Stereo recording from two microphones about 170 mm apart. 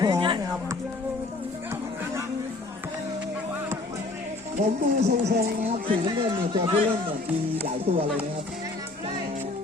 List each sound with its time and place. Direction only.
0.0 s music: 25° right (ahead or behind)
4.5 s speech: 45° right (ahead or behind)
6.1 s speech: 25° right (ahead or behind)
7.9 s speech: 40° right (ahead or behind)